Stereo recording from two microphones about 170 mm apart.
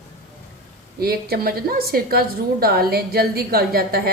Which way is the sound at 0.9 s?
65° right (ahead or behind).